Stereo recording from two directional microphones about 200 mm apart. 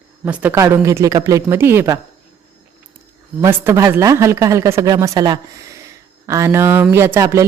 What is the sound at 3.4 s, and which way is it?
Speech, 15° right (ahead or behind).